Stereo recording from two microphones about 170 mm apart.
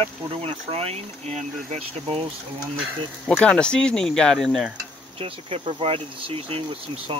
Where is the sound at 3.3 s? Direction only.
5° left (ahead or behind).